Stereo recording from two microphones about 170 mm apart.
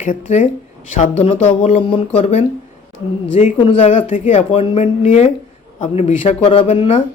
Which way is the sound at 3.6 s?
30° left (ahead or behind).